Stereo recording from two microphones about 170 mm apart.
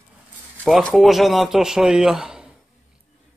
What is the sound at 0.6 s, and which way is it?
A man's voice, 5° left (ahead or behind).